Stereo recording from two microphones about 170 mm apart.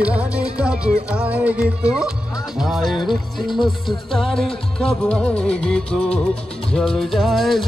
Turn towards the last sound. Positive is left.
turn(degrees=0)  # may be behind; listen again after turning